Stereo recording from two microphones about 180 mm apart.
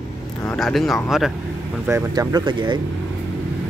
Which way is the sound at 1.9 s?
20° right (ahead or behind).